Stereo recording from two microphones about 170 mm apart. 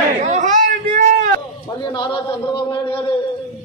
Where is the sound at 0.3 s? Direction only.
45° right (ahead or behind).